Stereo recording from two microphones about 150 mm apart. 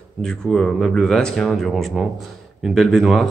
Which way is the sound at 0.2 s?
5° left (ahead or behind).